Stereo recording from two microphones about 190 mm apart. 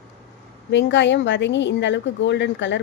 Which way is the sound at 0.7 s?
70° left (ahead or behind).